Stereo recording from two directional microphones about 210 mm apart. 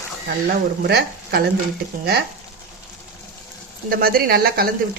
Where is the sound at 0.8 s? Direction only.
50° right (ahead or behind).